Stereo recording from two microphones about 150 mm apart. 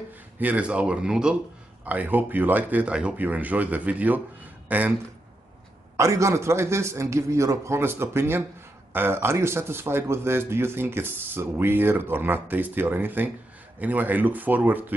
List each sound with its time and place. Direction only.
0.4 s speech: 10° right (ahead or behind)
5.9 s speech: 20° right (ahead or behind)